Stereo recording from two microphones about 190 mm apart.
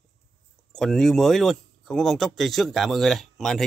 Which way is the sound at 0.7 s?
Centre (ahead or behind).